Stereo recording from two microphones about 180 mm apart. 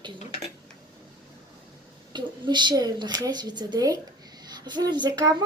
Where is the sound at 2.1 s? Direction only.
25° right (ahead or behind).